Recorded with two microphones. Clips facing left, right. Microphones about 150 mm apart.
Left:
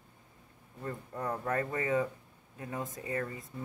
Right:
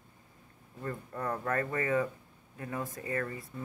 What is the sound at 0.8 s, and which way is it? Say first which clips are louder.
Speech: right 1 dB; 15° left (ahead or behind).